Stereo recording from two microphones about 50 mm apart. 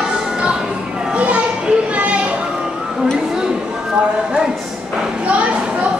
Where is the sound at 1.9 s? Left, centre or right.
Right.